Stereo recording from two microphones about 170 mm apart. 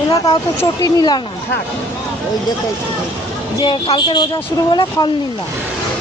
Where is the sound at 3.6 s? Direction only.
25° left (ahead or behind).